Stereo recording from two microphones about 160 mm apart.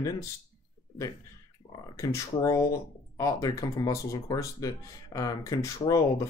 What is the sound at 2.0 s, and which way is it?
Speech, 20° left (ahead or behind).